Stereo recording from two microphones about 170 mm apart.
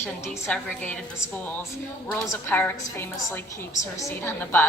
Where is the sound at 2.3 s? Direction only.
10° left (ahead or behind).